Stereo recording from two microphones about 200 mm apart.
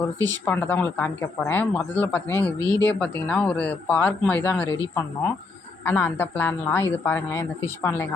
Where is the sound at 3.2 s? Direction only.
5° left (ahead or behind).